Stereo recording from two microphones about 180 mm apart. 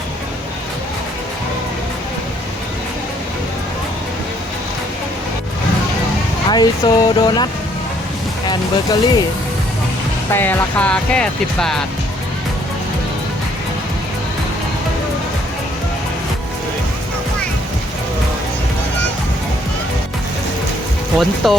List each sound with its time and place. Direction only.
6.5 s speech: 25° left (ahead or behind)
8.4 s speech: 25° left (ahead or behind)
10.3 s speech: 10° left (ahead or behind)
21.2 s speech: centre (ahead or behind)